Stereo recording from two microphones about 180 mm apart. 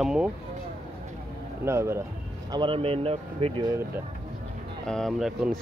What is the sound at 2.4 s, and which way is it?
Speech, 25° right (ahead or behind).